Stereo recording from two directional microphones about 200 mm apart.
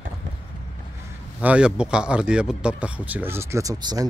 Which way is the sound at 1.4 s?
5° right (ahead or behind).